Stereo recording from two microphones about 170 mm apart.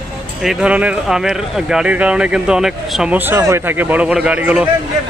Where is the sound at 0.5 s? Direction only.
5° right (ahead or behind).